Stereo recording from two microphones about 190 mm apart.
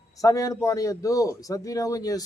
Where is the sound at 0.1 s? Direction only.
15° left (ahead or behind).